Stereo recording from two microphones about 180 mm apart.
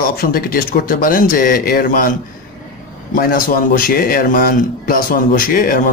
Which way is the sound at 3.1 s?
55° left (ahead or behind).